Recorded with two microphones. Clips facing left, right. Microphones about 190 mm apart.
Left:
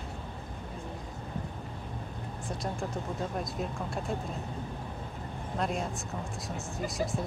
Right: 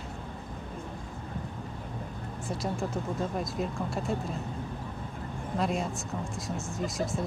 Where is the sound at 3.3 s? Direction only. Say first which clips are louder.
Right 2 dB; centre (ahead or behind).